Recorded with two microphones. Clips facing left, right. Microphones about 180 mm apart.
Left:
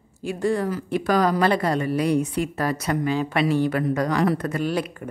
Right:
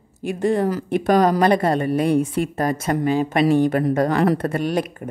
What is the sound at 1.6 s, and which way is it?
A woman's voice, 50° right (ahead or behind).